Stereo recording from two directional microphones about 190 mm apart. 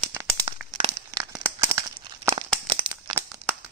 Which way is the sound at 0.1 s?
10° right (ahead or behind).